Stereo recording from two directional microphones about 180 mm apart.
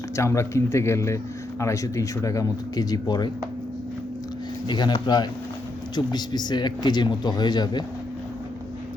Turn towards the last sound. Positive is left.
turn(degrees=25)  # may be behind; listen again after turning